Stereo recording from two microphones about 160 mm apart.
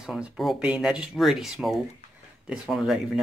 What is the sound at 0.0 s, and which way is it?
Speech, 5° right (ahead or behind).